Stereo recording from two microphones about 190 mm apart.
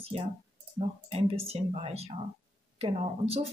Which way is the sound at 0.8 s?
30° right (ahead or behind).